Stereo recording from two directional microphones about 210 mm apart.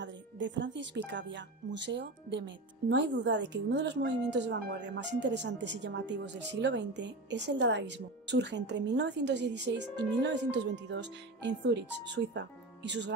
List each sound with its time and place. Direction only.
0.0 s speech: 60° right (ahead or behind)